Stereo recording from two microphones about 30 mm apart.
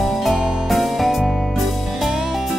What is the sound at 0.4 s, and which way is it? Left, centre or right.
Music, centre.